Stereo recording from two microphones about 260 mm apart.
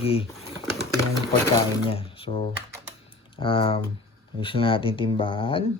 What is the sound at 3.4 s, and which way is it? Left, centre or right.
Speech, centre.